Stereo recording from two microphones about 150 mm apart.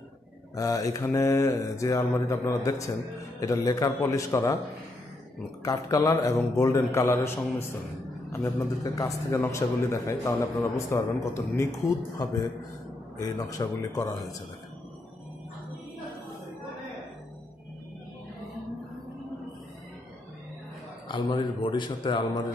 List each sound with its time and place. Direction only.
0.6 s a man's voice: 20° left (ahead or behind)
5.6 s a man's voice: 25° left (ahead or behind)
13.2 s a man's voice: 25° left (ahead or behind)
21.1 s a man's voice: 30° left (ahead or behind)